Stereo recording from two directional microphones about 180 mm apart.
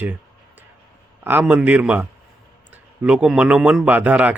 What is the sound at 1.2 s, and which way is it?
A man's voice, 10° right (ahead or behind).